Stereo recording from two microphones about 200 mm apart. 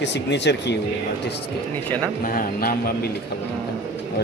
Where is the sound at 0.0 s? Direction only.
60° left (ahead or behind).